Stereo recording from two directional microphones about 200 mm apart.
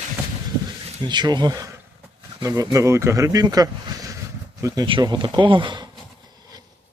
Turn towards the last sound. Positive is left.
turn(degrees=-25)  # may be behind; listen again after turning